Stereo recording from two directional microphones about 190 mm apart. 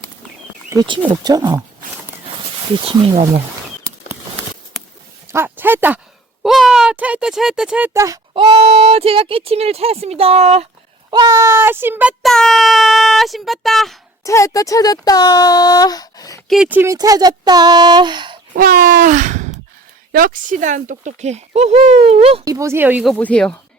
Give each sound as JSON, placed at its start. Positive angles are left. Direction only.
{"t": 1.1, "sound": "speech", "side_deg": -20}
{"t": 2.7, "sound": "speech", "side_deg": -25}
{"t": 5.3, "sound": "speech", "side_deg": -10}
{"t": 11.1, "sound": "speech", "side_deg": -20}
{"t": 14.3, "sound": "speech", "side_deg": 15}
{"t": 16.5, "sound": "speech", "side_deg": -5}
{"t": 18.5, "sound": "sigh", "side_deg": -50}
{"t": 20.1, "sound": "speech", "side_deg": -45}
{"t": 22.4, "sound": "speech", "side_deg": -15}
{"t": 23.1, "sound": "speech", "side_deg": 5}